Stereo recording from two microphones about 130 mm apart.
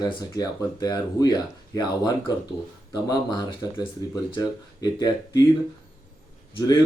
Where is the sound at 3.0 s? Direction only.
30° left (ahead or behind).